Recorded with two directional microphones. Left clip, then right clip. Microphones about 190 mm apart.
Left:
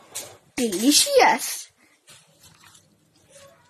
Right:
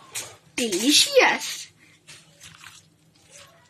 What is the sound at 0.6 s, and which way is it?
Speech, 50° left (ahead or behind).